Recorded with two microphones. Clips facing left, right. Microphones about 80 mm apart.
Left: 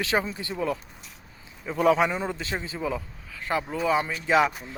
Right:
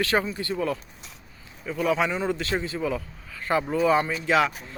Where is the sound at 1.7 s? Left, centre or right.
Left.